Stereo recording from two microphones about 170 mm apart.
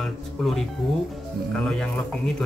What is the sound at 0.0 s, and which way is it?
Speech, centre (ahead or behind).